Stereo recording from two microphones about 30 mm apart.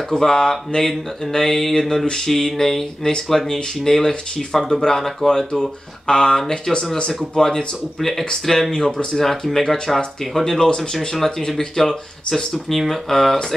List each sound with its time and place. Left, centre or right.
0.1 s speech: centre
8.0 s speech: centre
8.7 s speech: left